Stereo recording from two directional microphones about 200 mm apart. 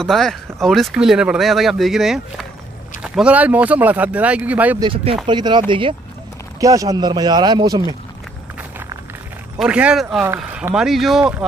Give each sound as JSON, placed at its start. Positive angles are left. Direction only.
{"t": 0.0, "sound": "speech", "side_deg": 0}
{"t": 4.8, "sound": "speech", "side_deg": -25}
{"t": 9.6, "sound": "speech", "side_deg": -5}